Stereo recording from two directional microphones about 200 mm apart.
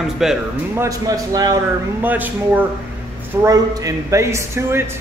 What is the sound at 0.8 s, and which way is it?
A man's voice, 15° right (ahead or behind).